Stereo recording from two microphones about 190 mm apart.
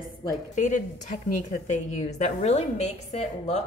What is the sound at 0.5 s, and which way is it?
A woman's voice, 40° left (ahead or behind).